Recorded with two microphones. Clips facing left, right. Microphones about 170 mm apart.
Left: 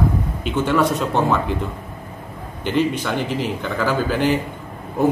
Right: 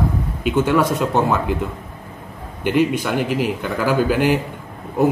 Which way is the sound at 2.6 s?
10° right (ahead or behind).